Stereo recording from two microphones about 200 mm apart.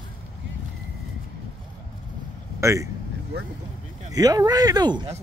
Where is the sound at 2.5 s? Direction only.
15° right (ahead or behind).